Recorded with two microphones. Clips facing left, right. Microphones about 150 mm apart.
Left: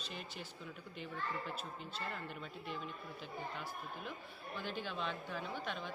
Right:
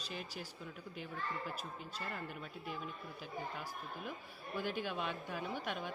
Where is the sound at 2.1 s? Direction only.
5° right (ahead or behind).